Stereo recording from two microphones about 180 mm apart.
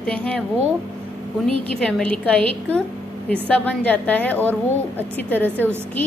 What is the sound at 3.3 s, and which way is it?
A woman's voice, 10° left (ahead or behind).